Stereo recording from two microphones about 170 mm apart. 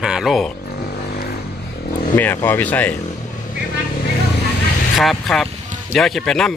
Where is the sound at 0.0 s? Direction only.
5° right (ahead or behind).